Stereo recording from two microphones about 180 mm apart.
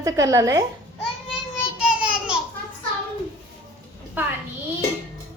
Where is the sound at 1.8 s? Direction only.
5° right (ahead or behind).